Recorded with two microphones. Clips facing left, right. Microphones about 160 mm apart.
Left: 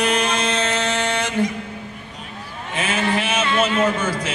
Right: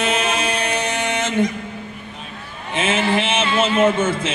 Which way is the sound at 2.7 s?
25° right (ahead or behind).